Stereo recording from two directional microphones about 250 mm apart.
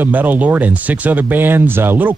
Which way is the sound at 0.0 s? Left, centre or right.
Centre.